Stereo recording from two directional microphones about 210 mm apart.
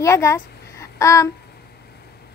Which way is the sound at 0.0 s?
15° left (ahead or behind).